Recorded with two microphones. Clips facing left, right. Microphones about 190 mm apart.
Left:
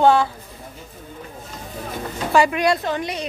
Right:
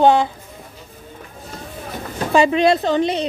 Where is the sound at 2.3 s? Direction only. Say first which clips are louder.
Right 3 dB; 25° right (ahead or behind).